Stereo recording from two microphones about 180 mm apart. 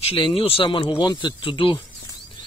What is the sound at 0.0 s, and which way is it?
Speech, 30° left (ahead or behind).